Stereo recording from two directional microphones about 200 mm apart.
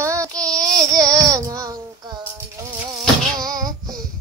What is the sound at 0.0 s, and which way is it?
Child singing, 15° right (ahead or behind).